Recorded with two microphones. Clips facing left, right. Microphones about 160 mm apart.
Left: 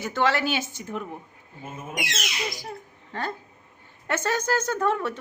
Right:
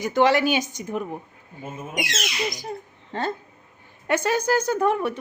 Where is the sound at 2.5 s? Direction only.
20° right (ahead or behind).